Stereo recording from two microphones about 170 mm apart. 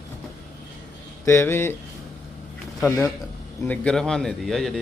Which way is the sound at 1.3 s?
15° left (ahead or behind).